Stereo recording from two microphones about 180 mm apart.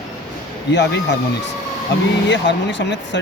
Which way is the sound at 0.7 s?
75° left (ahead or behind).